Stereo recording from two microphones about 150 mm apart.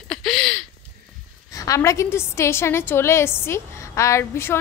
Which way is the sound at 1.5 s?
20° left (ahead or behind).